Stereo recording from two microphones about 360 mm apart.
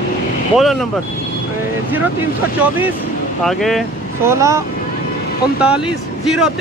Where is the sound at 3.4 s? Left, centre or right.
Centre.